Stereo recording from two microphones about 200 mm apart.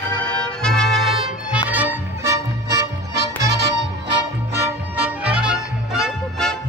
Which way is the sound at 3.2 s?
60° right (ahead or behind).